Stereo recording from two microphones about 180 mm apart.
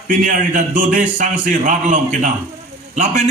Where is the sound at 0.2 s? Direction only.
50° right (ahead or behind).